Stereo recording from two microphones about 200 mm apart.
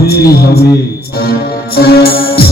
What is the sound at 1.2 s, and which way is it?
Music, 50° left (ahead or behind).